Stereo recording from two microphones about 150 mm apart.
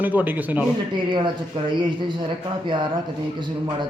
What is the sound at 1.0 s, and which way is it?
Speech, 30° right (ahead or behind).